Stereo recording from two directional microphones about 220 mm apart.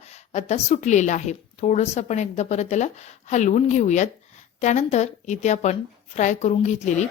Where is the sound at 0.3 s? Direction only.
30° left (ahead or behind).